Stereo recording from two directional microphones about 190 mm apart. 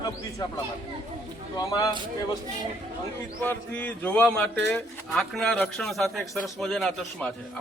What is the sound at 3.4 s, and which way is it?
A man's voice, 10° left (ahead or behind).